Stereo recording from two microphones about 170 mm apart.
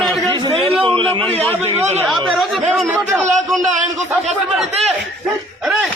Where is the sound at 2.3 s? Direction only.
Centre (ahead or behind).